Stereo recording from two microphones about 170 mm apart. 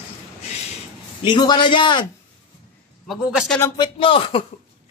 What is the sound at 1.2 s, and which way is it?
Speech, 25° left (ahead or behind).